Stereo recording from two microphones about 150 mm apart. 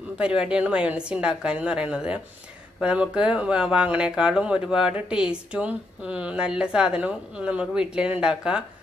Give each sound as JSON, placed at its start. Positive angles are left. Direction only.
{"t": 0.2, "sound": "speech", "side_deg": -5}